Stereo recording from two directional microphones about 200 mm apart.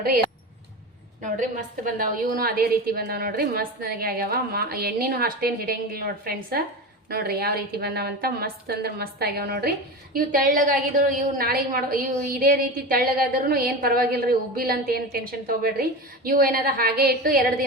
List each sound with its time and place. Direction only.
1.2 s a woman's voice: 40° right (ahead or behind)